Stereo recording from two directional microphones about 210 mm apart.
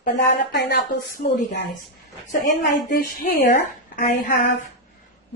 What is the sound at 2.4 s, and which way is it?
Speech, 40° left (ahead or behind).